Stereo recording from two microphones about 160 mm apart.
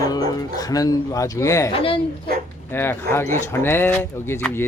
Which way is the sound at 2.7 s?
15° left (ahead or behind).